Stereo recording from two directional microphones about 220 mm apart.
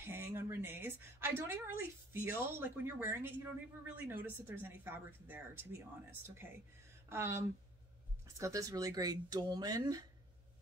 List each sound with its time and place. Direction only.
0.0 s a woman's voice: 10° right (ahead or behind)